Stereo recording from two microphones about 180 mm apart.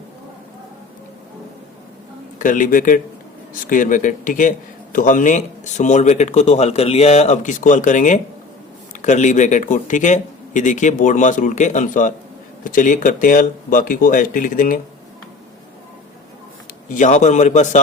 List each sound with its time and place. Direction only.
2.4 s a man's voice: 45° left (ahead or behind)
16.9 s a man's voice: 45° left (ahead or behind)